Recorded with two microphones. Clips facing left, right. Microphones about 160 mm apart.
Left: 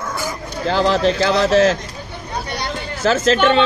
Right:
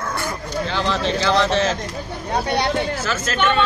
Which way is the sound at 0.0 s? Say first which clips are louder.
Left 1 dB; 5° left (ahead or behind).